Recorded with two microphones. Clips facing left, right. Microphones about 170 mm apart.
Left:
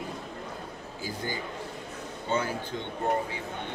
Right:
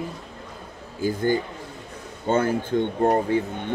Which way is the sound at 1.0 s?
55° right (ahead or behind).